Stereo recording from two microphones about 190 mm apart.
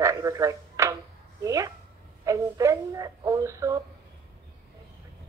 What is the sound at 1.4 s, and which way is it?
Speech, 15° right (ahead or behind).